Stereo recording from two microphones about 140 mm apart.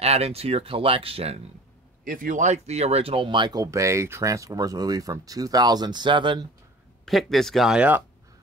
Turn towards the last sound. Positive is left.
turn(degrees=-10)  # may be behind; listen again after turning